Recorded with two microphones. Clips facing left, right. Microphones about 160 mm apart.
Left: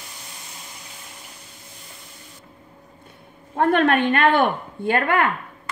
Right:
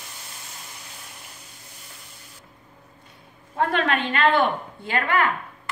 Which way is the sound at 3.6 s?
50° left (ahead or behind).